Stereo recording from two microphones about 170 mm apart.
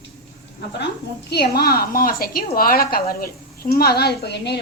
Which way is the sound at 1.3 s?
75° left (ahead or behind).